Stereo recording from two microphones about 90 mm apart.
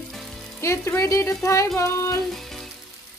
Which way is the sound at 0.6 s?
30° left (ahead or behind).